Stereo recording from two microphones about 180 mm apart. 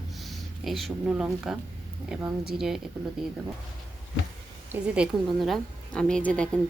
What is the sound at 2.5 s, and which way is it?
Speech, centre (ahead or behind).